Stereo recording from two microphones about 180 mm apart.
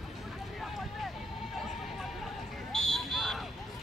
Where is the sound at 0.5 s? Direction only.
Centre (ahead or behind).